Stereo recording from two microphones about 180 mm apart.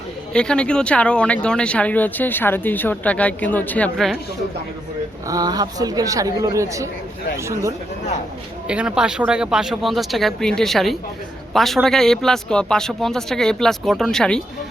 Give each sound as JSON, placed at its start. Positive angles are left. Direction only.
{"t": 0.3, "sound": "speech", "side_deg": 5}
{"t": 5.3, "sound": "speech", "side_deg": -20}